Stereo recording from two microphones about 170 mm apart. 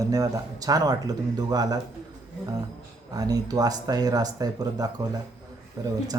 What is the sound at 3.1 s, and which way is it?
Speech, 20° right (ahead or behind).